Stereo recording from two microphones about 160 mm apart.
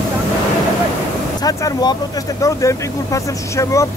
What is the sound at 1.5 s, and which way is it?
Vehicle, 25° left (ahead or behind).